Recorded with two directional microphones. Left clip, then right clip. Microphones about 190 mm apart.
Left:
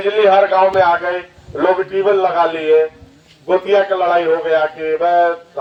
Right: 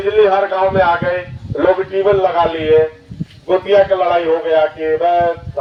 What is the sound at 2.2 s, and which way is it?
Speech, 20° left (ahead or behind).